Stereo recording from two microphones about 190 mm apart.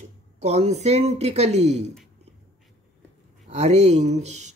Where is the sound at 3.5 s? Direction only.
35° right (ahead or behind).